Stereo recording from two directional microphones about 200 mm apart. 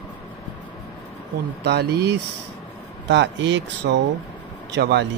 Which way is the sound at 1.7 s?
55° right (ahead or behind).